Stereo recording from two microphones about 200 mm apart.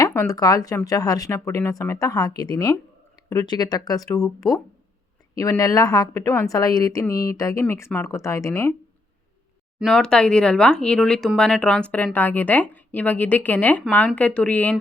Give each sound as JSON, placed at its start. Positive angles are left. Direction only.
{"t": 0.0, "sound": "speech", "side_deg": 15}
{"t": 9.8, "sound": "speech", "side_deg": 5}